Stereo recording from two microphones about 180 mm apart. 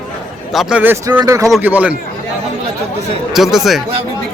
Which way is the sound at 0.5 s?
5° right (ahead or behind).